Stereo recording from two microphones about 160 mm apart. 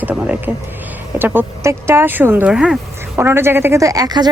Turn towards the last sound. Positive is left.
turn(degrees=-25)  # may be behind; listen again after turning